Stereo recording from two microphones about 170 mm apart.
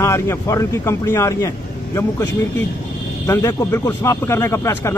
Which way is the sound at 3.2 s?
15° left (ahead or behind).